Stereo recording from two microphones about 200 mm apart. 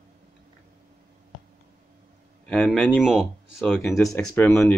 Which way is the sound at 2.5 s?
Centre (ahead or behind).